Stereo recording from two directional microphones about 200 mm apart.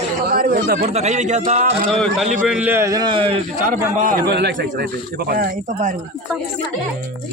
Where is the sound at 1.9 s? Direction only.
Centre (ahead or behind); by 3.4 s 25° right (ahead or behind).